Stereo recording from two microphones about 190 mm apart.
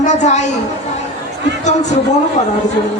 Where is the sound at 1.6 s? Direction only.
40° left (ahead or behind).